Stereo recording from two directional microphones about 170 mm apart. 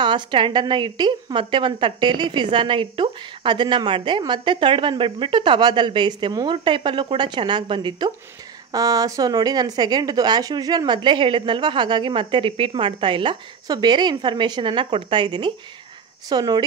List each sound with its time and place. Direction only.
0.0 s a woman's voice: 30° right (ahead or behind)